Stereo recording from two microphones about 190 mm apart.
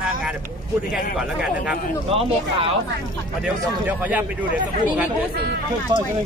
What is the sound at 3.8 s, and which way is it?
Speech, 10° right (ahead or behind).